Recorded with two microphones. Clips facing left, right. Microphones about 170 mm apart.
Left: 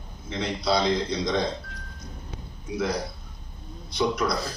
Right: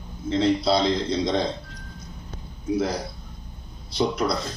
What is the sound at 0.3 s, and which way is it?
Speech, 30° right (ahead or behind).